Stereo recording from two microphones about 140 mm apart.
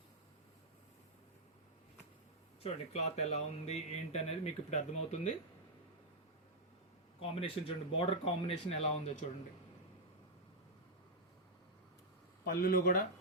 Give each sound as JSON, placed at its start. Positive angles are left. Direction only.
{"t": 2.9, "sound": "speech", "side_deg": 50}
{"t": 7.2, "sound": "speech", "side_deg": 45}
{"t": 12.5, "sound": "speech", "side_deg": 90}